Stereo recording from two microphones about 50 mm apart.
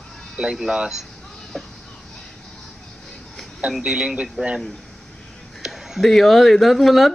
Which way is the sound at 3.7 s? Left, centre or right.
Centre.